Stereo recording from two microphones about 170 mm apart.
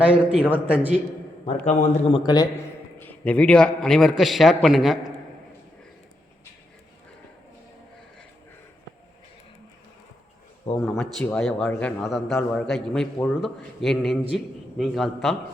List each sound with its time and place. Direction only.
0.0 s a man's voice: 5° right (ahead or behind)
1.6 s a man's voice: 45° left (ahead or behind)
2.1 s a man's voice: 25° left (ahead or behind)
3.0 s a man's voice: 10° left (ahead or behind)
10.8 s a man's voice: 5° left (ahead or behind)